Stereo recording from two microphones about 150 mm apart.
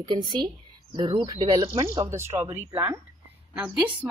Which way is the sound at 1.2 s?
25° right (ahead or behind).